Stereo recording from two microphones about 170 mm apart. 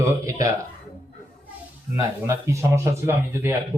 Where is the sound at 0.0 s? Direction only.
20° right (ahead or behind).